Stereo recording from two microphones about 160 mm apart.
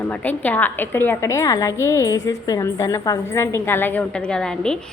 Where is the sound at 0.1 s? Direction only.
10° left (ahead or behind).